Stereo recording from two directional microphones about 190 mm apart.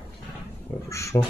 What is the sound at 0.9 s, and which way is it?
Speech, 15° left (ahead or behind).